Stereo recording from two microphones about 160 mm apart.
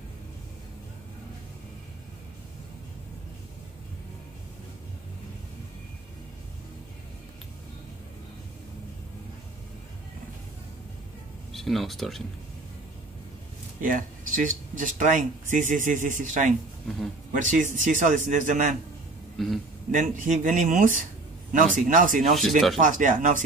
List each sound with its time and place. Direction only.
11.5 s speech: centre (ahead or behind)
13.7 s speech: 55° right (ahead or behind)
19.3 s speech: centre (ahead or behind)
19.9 s a man's voice: 55° right (ahead or behind)